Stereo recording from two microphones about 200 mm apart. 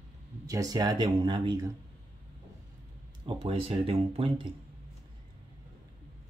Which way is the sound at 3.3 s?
25° right (ahead or behind).